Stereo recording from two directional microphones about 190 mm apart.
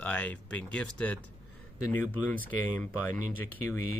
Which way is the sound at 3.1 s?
40° right (ahead or behind).